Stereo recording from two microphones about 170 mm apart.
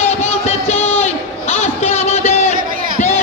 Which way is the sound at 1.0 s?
40° left (ahead or behind).